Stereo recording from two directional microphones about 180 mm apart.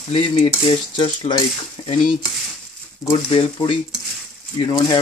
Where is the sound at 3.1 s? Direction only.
25° left (ahead or behind).